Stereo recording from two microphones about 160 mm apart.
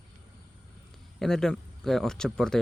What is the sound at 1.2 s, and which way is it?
Speech, 5° left (ahead or behind).